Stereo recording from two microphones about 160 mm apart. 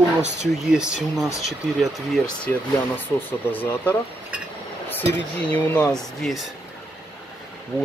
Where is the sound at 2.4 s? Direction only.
10° left (ahead or behind).